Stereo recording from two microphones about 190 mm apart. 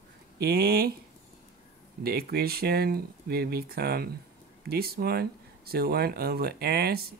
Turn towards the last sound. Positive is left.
turn(degrees=-55)  # may be behind; listen again after turning